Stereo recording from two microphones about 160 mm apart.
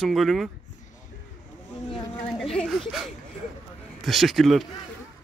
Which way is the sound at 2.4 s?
Centre (ahead or behind).